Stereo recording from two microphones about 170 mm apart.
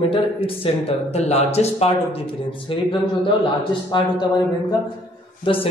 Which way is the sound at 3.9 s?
25° left (ahead or behind).